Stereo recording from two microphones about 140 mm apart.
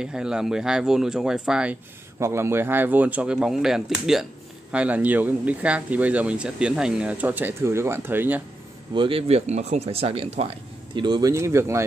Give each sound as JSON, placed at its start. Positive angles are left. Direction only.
{"t": 0.0, "sound": "speech", "side_deg": -5}
{"t": 2.1, "sound": "speech", "side_deg": -20}
{"t": 8.9, "sound": "speech", "side_deg": -40}
{"t": 11.0, "sound": "speech", "side_deg": -30}